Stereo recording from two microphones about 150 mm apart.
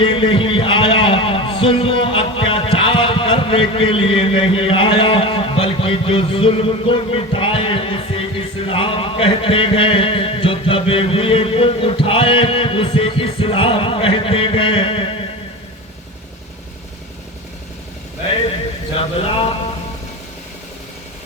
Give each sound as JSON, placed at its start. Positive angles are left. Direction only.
{"t": 0.0, "sound": "a man's voice", "side_deg": 35}